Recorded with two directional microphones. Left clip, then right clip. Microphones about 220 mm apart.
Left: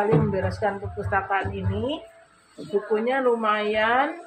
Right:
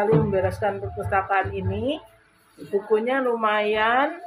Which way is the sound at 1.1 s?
45° right (ahead or behind).